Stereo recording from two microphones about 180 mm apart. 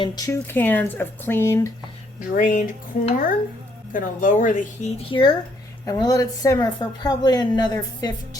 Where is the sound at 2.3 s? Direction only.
45° left (ahead or behind).